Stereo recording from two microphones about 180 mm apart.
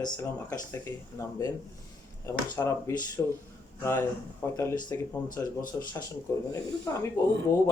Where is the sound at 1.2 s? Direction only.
15° left (ahead or behind).